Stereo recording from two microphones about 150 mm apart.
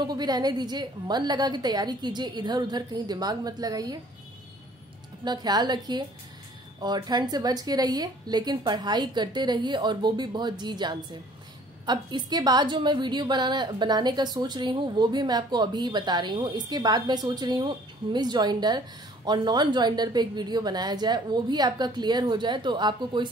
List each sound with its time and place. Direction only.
0.0 s a woman's voice: 30° right (ahead or behind)
5.2 s a woman's voice: 30° right (ahead or behind)